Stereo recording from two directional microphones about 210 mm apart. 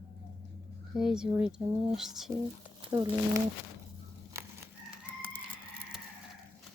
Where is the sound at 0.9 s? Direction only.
5° right (ahead or behind).